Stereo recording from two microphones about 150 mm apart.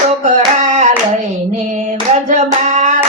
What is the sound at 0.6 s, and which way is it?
Hands, 50° right (ahead or behind).